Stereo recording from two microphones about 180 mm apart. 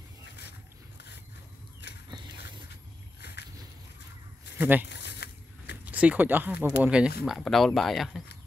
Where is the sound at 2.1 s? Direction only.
25° right (ahead or behind).